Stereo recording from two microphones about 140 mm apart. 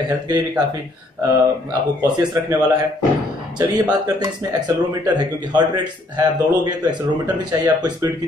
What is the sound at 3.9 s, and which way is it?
Speech, 25° right (ahead or behind).